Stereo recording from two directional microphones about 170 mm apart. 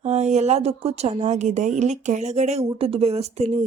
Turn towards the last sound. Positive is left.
turn(degrees=-40)  # may be behind; listen again after turning